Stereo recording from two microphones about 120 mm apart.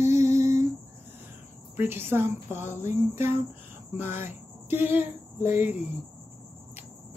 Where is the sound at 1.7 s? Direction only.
20° right (ahead or behind).